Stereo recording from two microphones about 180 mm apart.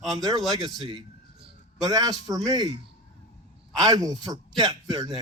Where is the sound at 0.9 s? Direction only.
30° right (ahead or behind).